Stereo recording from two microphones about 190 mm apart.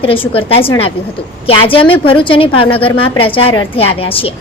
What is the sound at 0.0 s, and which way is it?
A woman's voice, 30° left (ahead or behind).